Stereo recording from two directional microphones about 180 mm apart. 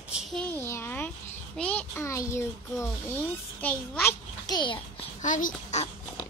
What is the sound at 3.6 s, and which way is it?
Speech, 10° left (ahead or behind).